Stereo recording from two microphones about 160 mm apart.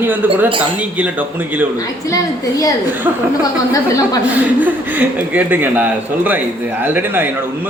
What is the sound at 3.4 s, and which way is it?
Speech, 20° left (ahead or behind).